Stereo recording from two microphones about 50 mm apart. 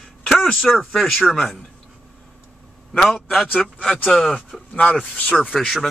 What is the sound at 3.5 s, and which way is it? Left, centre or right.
Speech, left.